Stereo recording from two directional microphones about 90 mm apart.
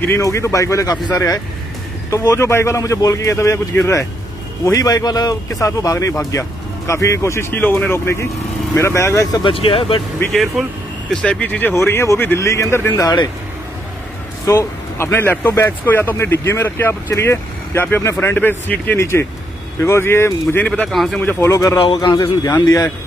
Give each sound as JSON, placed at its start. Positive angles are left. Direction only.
{"t": 0.1, "sound": "speech", "side_deg": 30}
{"t": 4.6, "sound": "speech", "side_deg": 40}
{"t": 7.5, "sound": "speech", "side_deg": 20}
{"t": 9.5, "sound": "speech", "side_deg": 90}
{"t": 10.3, "sound": "speech", "side_deg": 0}
{"t": 11.1, "sound": "speech", "side_deg": 10}
{"t": 11.7, "sound": "speech", "side_deg": 30}
{"t": 12.9, "sound": "speech", "side_deg": 50}
{"t": 14.4, "sound": "speech", "side_deg": 35}
{"t": 20.6, "sound": "speech", "side_deg": 10}
{"t": 20.9, "sound": "speech", "side_deg": 0}
{"t": 21.4, "sound": "speech", "side_deg": 35}
{"t": 21.9, "sound": "speech", "side_deg": 50}